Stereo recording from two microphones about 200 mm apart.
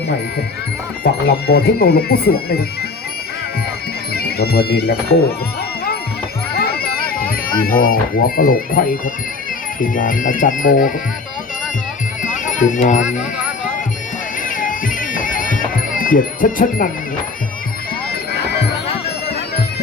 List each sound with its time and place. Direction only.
1.0 s speech: 50° left (ahead or behind)
4.1 s speech: 50° left (ahead or behind)
6.5 s music: 50° left (ahead or behind)
9.8 s speech: 40° left (ahead or behind)
12.2 s music: 40° left (ahead or behind)
14.4 s music: 40° left (ahead or behind)
18.1 s music: 55° left (ahead or behind)